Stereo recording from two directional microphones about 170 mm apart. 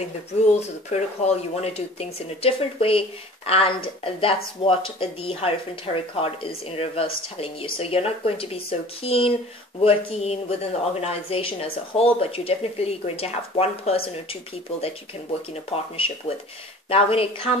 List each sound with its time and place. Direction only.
0.6 s speech: 40° left (ahead or behind)
7.3 s speech: 30° left (ahead or behind)